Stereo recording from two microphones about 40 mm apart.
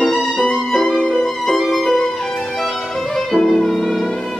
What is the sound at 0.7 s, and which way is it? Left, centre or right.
Violin, centre.